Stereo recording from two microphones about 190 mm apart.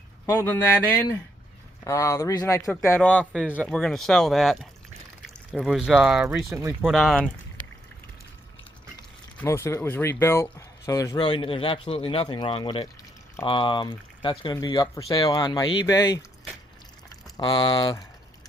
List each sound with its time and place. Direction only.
0.3 s speech: 10° left (ahead or behind)
3.2 s speech: 5° right (ahead or behind)
3.7 s speech: 5° left (ahead or behind)
6.2 s speech: 15° right (ahead or behind)
6.9 s speech: centre (ahead or behind)
9.4 s speech: 15° left (ahead or behind)
17.3 s speech: 20° left (ahead or behind)